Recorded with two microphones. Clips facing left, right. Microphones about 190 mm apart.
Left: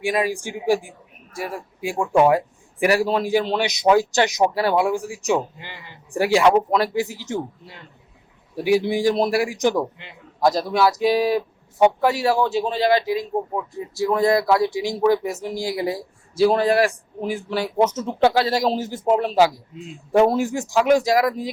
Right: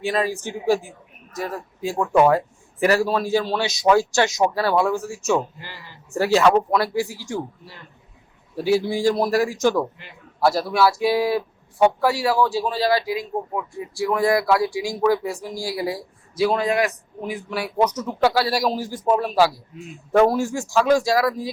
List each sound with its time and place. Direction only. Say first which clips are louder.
0.0 s a man's voice: left 1 dB; 15° left (ahead or behind)